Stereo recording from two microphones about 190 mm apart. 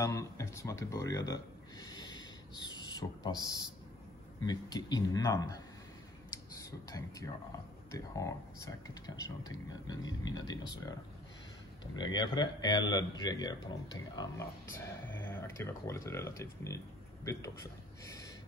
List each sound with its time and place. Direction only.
0.0 s a sound: 15° left (ahead or behind)
4.4 s speech: 20° left (ahead or behind)
6.5 s speech: 15° left (ahead or behind)